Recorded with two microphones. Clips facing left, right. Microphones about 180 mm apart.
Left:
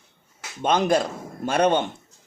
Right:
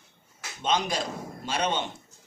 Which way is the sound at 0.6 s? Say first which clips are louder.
Left 7 dB; 55° left (ahead or behind).